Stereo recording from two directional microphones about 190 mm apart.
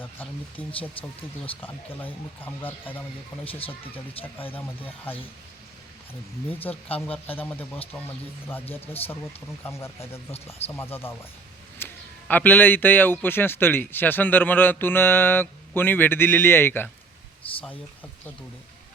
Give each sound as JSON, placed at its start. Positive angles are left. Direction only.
{"t": 0.5, "sound": "speech", "side_deg": 30}
{"t": 1.6, "sound": "a man's voice", "side_deg": 10}
{"t": 6.6, "sound": "a man's voice", "side_deg": 10}
{"t": 11.8, "sound": "a sound", "side_deg": 10}
{"t": 12.3, "sound": "a man's voice", "side_deg": 10}